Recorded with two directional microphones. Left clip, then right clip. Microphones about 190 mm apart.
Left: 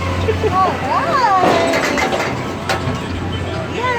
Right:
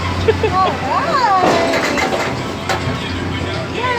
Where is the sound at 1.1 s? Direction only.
Centre (ahead or behind).